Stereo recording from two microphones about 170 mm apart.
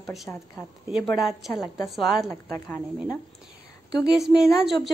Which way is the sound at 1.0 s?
Centre (ahead or behind).